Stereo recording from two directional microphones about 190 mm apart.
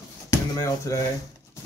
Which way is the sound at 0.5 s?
15° left (ahead or behind).